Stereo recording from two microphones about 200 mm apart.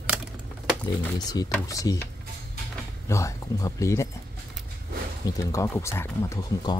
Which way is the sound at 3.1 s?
15° left (ahead or behind).